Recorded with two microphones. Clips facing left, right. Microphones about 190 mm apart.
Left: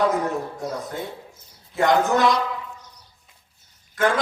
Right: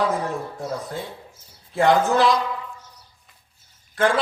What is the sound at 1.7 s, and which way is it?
Speech, 30° right (ahead or behind).